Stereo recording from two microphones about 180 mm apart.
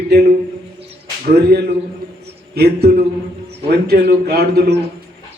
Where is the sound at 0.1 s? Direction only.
60° right (ahead or behind).